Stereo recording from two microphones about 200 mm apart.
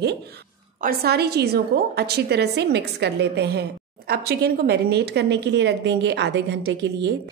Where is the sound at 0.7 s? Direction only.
50° right (ahead or behind).